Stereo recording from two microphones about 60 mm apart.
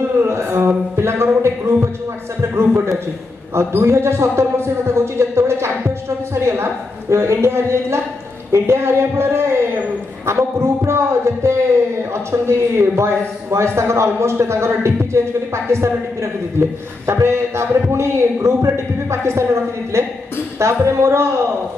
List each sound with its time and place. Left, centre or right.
0.2 s a man's voice: right